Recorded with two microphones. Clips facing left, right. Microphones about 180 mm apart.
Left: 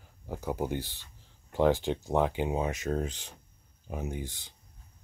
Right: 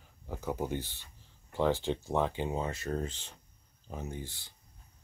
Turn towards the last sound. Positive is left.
turn(degrees=15)  # may be behind; listen again after turning